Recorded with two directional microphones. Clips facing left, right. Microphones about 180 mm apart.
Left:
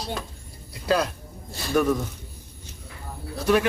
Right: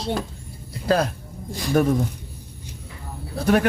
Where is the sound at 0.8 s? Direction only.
45° right (ahead or behind).